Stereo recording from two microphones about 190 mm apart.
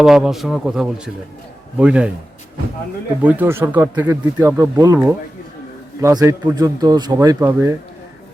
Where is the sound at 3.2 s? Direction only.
10° right (ahead or behind).